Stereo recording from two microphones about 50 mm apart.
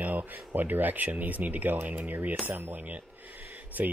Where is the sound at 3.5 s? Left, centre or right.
Right.